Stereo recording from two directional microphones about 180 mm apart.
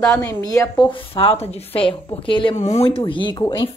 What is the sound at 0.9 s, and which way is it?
Speech, 30° left (ahead or behind).